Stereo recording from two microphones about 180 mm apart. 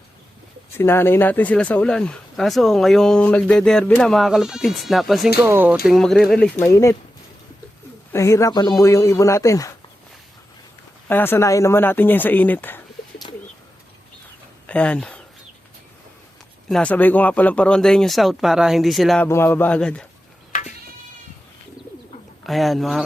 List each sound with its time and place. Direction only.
0.8 s speech: 10° left (ahead or behind)
5.4 s speech: 10° right (ahead or behind)
5.8 s speech: centre (ahead or behind)
6.7 s speech: 15° left (ahead or behind)
8.1 s speech: 15° left (ahead or behind)
11.1 s speech: 10° left (ahead or behind)
14.7 s speech: 5° left (ahead or behind)
16.6 s speech: 5° left (ahead or behind)
19.3 s speech: 10° left (ahead or behind)
20.5 s sheep: 45° left (ahead or behind)
22.4 s speech: centre (ahead or behind)